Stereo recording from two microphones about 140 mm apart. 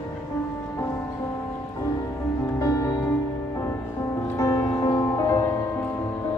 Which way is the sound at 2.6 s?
25° left (ahead or behind).